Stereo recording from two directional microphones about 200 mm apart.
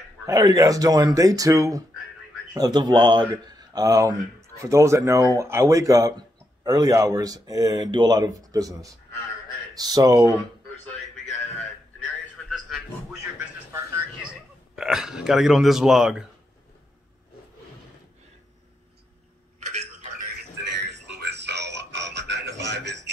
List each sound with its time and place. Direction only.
0.3 s speech: 20° right (ahead or behind)
12.4 s a sound: centre (ahead or behind)
14.8 s speech: centre (ahead or behind)
19.6 s clock: 35° right (ahead or behind)
20.8 s music: 55° right (ahead or behind)